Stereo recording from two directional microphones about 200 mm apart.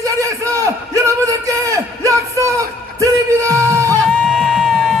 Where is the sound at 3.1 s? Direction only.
15° right (ahead or behind).